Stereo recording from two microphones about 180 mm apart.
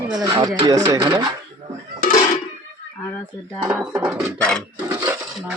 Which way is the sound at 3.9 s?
15° right (ahead or behind).